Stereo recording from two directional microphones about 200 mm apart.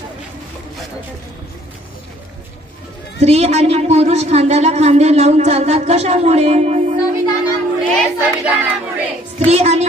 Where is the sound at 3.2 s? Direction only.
30° right (ahead or behind).